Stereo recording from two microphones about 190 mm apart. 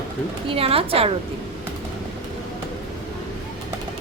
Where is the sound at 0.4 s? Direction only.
30° right (ahead or behind).